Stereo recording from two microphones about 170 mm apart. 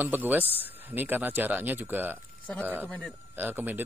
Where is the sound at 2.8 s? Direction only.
10° left (ahead or behind).